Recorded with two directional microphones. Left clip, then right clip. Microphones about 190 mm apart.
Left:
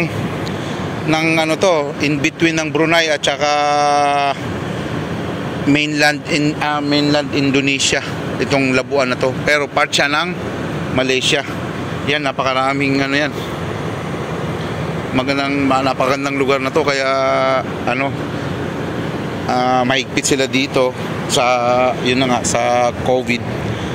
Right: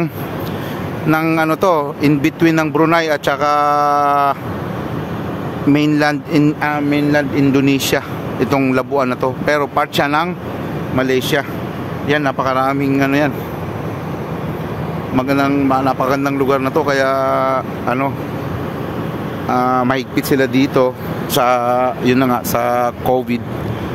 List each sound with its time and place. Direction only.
1.1 s speech: 35° right (ahead or behind)
5.7 s a man's voice: 20° right (ahead or behind)
15.1 s a man's voice: 20° right (ahead or behind)
19.5 s speech: 20° right (ahead or behind)